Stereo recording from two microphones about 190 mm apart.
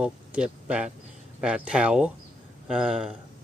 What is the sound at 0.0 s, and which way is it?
Speech, 5° right (ahead or behind).